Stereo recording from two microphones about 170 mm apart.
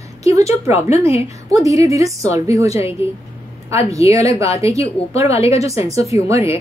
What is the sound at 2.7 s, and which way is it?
Speech, 35° left (ahead or behind).